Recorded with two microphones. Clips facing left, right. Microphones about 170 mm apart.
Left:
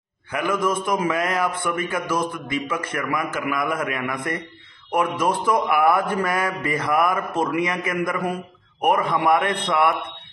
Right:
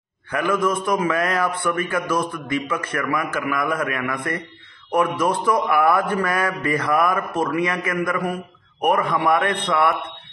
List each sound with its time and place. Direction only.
0.3 s a man's voice: 15° left (ahead or behind)